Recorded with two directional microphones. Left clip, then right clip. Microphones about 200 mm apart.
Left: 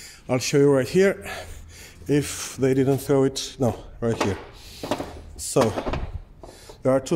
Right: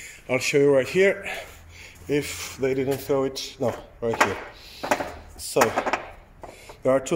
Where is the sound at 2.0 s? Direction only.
50° left (ahead or behind).